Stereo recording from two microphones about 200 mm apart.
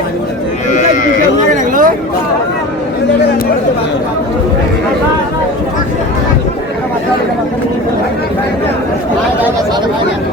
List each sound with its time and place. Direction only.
1.5 s chatter: 40° right (ahead or behind)